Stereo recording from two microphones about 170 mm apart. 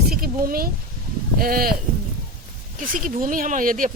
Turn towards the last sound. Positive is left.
turn(degrees=-50)  # may be behind; listen again after turning